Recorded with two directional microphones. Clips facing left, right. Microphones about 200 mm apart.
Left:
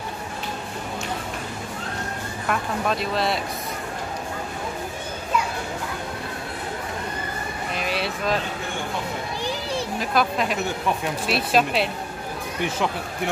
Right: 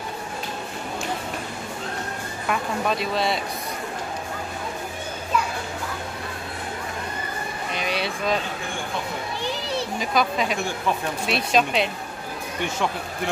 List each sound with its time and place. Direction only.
2.4 s speech: centre (ahead or behind)
7.7 s speech: centre (ahead or behind)
9.9 s speech: centre (ahead or behind)